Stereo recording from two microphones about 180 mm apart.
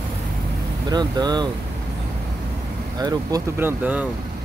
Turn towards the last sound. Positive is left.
turn(degrees=-10)  # may be behind; listen again after turning